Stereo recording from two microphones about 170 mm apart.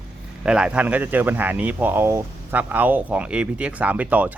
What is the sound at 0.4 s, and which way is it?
Speech, 5° right (ahead or behind).